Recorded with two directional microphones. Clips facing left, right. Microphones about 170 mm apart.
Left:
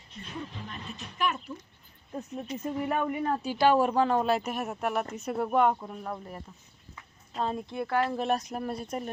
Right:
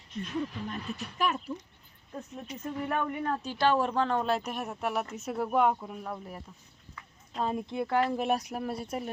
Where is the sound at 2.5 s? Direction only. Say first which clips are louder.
Left 2 dB; 10° left (ahead or behind).